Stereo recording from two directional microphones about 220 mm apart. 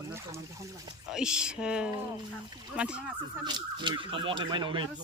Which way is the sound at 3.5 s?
20° right (ahead or behind).